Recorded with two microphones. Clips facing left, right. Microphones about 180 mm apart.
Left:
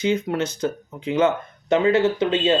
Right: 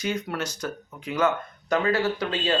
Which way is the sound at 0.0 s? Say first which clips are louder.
Left 7 dB; 25° left (ahead or behind).